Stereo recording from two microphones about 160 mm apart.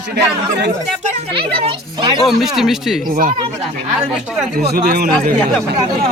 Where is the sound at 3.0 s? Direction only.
60° right (ahead or behind).